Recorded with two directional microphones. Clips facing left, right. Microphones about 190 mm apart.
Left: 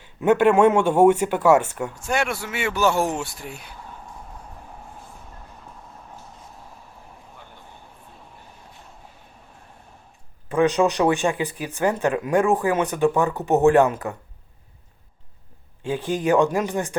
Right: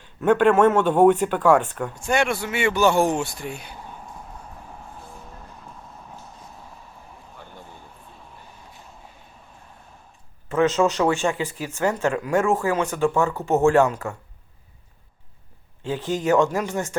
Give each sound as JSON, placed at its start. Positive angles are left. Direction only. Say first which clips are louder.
{"t": 0.0, "sound": "speech", "louder": "even", "side_deg": 10}
{"t": 10.5, "sound": "speech", "louder": "left 1 dB", "side_deg": 15}
{"t": 15.8, "sound": "speech", "louder": "left 1 dB", "side_deg": 15}